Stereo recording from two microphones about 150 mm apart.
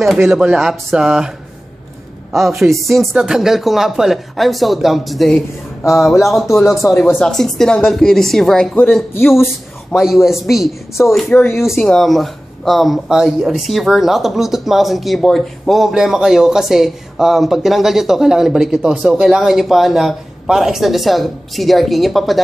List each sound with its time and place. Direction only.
0.3 s speech: 5° right (ahead or behind)
2.3 s speech: centre (ahead or behind)
6.5 s speech: 20° left (ahead or behind)
7.1 s speech: 5° left (ahead or behind)
9.9 s speech: centre (ahead or behind)